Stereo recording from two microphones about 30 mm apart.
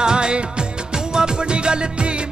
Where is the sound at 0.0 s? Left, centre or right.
Right.